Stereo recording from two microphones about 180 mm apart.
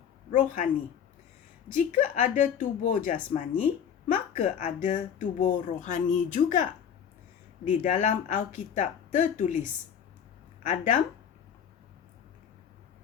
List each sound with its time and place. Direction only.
0.3 s speech: 45° left (ahead or behind)
2.0 s speech: 45° left (ahead or behind)